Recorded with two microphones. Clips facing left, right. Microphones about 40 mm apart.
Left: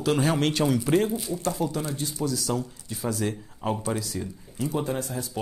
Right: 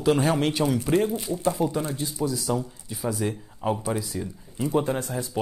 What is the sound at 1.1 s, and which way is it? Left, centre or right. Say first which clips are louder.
Speech: right 3 dB; centre.